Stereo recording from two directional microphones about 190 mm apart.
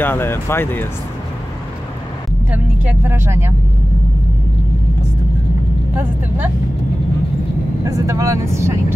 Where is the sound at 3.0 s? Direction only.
15° right (ahead or behind).